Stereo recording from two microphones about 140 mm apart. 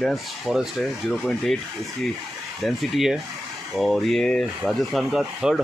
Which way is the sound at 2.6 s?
Centre (ahead or behind).